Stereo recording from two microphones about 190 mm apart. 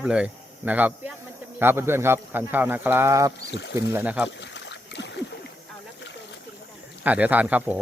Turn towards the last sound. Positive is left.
turn(degrees=-10)  # may be behind; listen again after turning